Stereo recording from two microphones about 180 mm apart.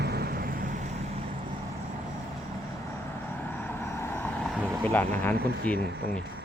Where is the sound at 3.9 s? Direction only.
15° left (ahead or behind).